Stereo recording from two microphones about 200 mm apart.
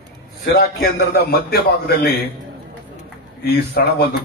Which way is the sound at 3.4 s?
55° left (ahead or behind).